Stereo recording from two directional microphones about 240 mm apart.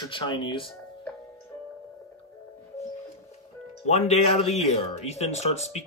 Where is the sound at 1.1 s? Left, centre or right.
Centre.